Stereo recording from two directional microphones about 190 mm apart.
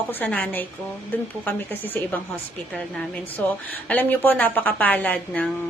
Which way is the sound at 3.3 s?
10° left (ahead or behind).